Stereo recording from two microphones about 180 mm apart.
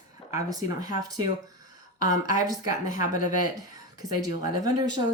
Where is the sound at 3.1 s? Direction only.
45° left (ahead or behind).